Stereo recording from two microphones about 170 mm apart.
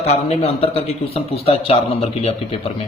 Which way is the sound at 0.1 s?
35° left (ahead or behind).